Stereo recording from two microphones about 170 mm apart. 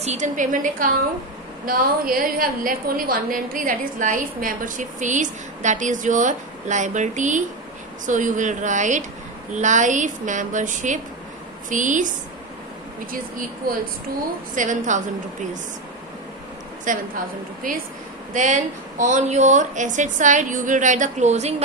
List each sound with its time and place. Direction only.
0.0 s a woman's voice: 40° right (ahead or behind)
13.6 s speech: 60° right (ahead or behind)
14.5 s a woman's voice: 50° right (ahead or behind)
16.9 s a woman's voice: 50° right (ahead or behind)